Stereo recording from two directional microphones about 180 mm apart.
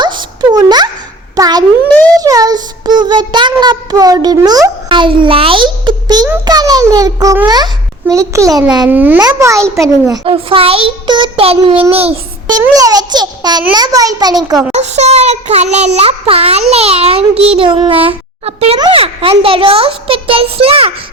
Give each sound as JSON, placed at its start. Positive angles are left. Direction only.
{"t": 0.0, "sound": "a sound", "side_deg": -25}
{"t": 2.1, "sound": "child singing", "side_deg": -20}
{"t": 3.6, "sound": "a sound", "side_deg": -20}
{"t": 8.9, "sound": "a child's voice", "side_deg": -10}
{"t": 10.2, "sound": "a child's voice", "side_deg": -30}
{"t": 12.7, "sound": "a child's voice", "side_deg": -20}
{"t": 14.7, "sound": "a child's voice", "side_deg": -40}